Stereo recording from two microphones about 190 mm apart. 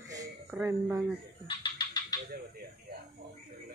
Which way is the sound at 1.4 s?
25° left (ahead or behind).